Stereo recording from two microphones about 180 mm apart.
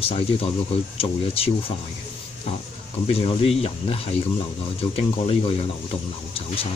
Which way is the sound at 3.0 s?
30° left (ahead or behind).